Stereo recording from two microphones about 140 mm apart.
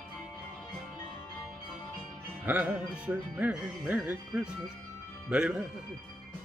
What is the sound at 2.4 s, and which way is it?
Music, 10° right (ahead or behind).